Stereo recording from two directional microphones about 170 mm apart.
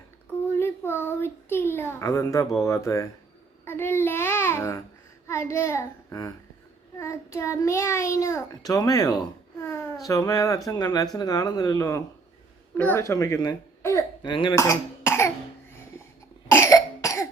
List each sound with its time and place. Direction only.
0.5 s a sound: 15° left (ahead or behind)
2.6 s a child's voice: 15° left (ahead or behind)
3.7 s babbling: 15° left (ahead or behind)
5.3 s a child's voice: 15° left (ahead or behind)
14.5 s cough: 15° left (ahead or behind)
16.5 s cough: 15° left (ahead or behind)